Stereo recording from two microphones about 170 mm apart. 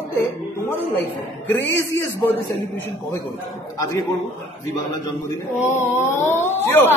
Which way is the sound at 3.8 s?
20° left (ahead or behind).